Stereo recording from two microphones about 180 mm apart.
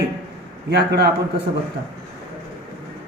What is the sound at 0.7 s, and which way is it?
Speech, 65° right (ahead or behind).